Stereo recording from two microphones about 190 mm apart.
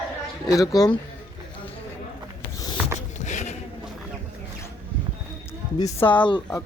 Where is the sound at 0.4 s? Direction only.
20° left (ahead or behind).